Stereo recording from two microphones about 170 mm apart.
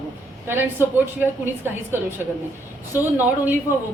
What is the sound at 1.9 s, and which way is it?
Speech, 15° right (ahead or behind).